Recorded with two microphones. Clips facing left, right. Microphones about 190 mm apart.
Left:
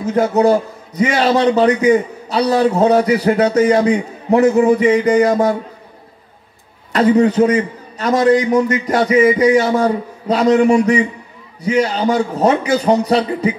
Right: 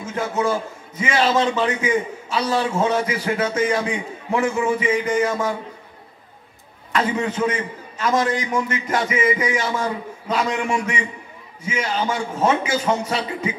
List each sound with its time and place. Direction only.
0.0 s a man's voice: 40° left (ahead or behind)
6.9 s a man's voice: 35° left (ahead or behind)